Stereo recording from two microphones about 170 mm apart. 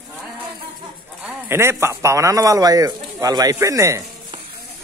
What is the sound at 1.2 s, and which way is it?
A man's voice, 15° right (ahead or behind).